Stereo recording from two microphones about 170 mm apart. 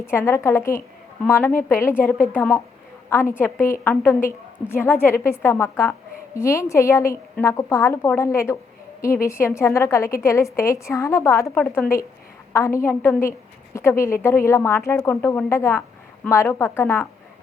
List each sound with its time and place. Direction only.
0.0 s a woman's voice: 15° left (ahead or behind)